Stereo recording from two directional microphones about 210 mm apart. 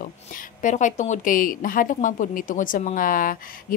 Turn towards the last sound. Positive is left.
turn(degrees=40)  # may be behind; listen again after turning